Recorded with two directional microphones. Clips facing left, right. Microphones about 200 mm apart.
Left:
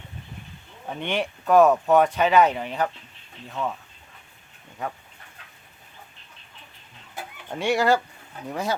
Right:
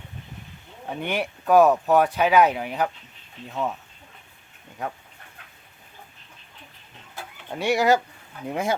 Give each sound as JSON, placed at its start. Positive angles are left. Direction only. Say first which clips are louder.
{"t": 0.9, "sound": "speech", "louder": "even", "side_deg": -10}
{"t": 7.6, "sound": "speech", "louder": "right 1 dB", "side_deg": -10}